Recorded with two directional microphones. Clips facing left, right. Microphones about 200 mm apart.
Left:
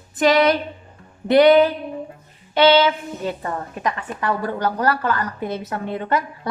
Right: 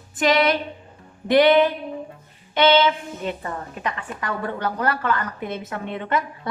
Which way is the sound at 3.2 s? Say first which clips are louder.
Left 3 dB; 35° left (ahead or behind).